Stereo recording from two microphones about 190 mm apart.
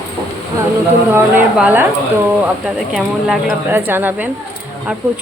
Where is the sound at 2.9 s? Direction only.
Centre (ahead or behind).